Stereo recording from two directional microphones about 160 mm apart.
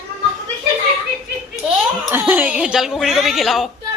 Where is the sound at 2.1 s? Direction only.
15° right (ahead or behind).